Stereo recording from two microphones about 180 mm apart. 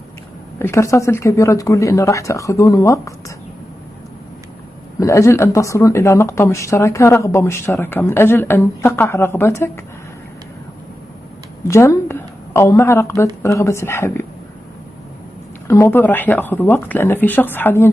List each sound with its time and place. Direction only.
0.6 s speech: 15° left (ahead or behind)
5.0 s speech: 15° left (ahead or behind)
11.6 s a woman's voice: 15° left (ahead or behind)
15.7 s speech: 15° left (ahead or behind)